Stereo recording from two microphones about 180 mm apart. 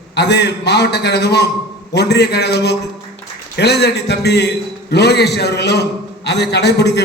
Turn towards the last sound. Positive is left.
turn(degrees=70)  # may be behind; listen again after turning